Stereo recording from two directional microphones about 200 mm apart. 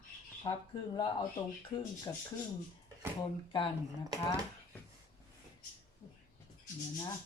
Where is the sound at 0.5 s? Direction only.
20° left (ahead or behind).